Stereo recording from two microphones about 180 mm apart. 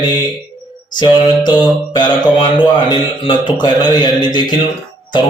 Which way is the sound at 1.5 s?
25° left (ahead or behind).